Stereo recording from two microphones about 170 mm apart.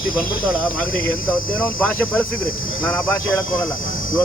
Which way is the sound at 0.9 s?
55° left (ahead or behind).